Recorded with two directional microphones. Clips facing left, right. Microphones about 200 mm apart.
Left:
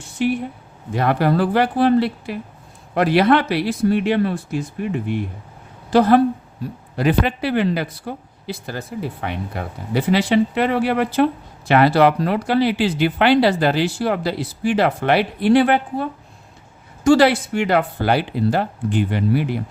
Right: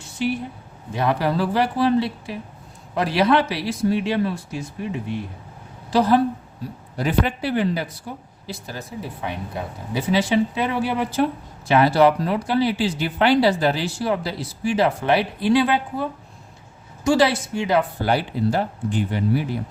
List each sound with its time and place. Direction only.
0.9 s speech: 55° left (ahead or behind)